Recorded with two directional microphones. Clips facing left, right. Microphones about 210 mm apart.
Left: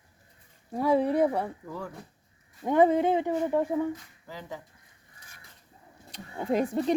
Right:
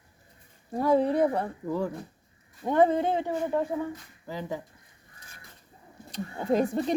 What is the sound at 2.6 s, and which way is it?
Speech, 10° left (ahead or behind).